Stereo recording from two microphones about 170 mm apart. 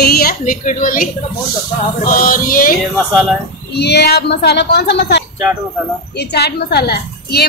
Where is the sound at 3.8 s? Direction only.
75° left (ahead or behind).